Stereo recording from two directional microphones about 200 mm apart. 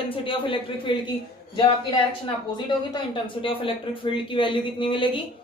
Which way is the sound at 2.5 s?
25° left (ahead or behind).